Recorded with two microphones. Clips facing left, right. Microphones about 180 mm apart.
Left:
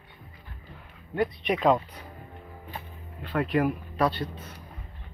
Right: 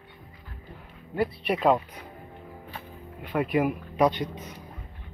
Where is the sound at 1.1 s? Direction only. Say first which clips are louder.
Even; 5° right (ahead or behind).